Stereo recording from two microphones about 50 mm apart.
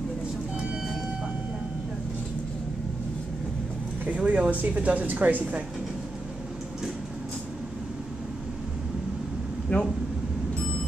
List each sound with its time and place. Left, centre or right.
4.1 s speech: right
9.7 s speech: left